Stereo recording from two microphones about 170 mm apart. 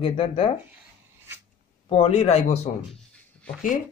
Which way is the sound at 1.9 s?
35° left (ahead or behind).